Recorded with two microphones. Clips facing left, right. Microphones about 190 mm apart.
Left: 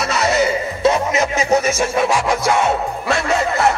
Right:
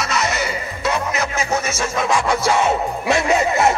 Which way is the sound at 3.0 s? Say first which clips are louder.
Right 2 dB; 20° right (ahead or behind).